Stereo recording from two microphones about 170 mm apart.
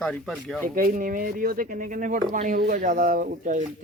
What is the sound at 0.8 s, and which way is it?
Speech, 55° right (ahead or behind).